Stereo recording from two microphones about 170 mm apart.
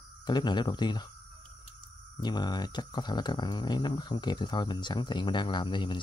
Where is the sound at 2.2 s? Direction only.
25° left (ahead or behind).